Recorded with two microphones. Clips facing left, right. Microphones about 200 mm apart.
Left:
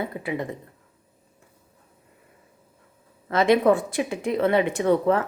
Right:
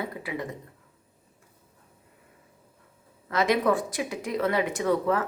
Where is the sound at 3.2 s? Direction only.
25° left (ahead or behind).